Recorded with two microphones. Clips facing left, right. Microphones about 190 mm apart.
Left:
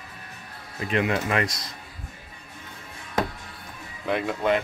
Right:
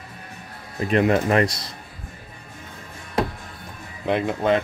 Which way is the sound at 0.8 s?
40° right (ahead or behind).